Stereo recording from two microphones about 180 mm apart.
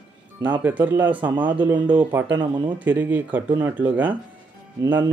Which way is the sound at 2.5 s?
25° right (ahead or behind).